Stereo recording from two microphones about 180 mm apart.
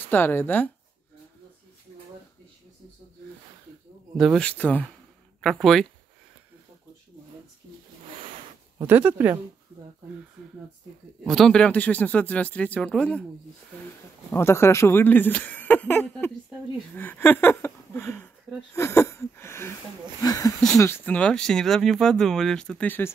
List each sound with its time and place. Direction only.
0.1 s speech: 10° left (ahead or behind)
4.2 s speech: 5° left (ahead or behind)
8.7 s speech: 10° right (ahead or behind)
11.2 s speech: centre (ahead or behind)
14.3 s speech: 15° left (ahead or behind)
18.8 s a sound: 15° left (ahead or behind)
20.2 s speech: 20° left (ahead or behind)